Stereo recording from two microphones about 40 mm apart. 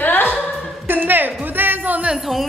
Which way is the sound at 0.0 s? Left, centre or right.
Left.